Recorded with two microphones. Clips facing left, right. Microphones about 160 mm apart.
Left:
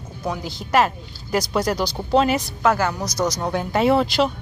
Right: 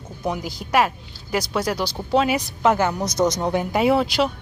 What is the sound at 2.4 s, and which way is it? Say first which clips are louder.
Speech: right 1 dB; 20° right (ahead or behind).